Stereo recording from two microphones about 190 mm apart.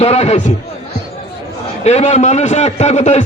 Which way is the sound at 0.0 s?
35° left (ahead or behind).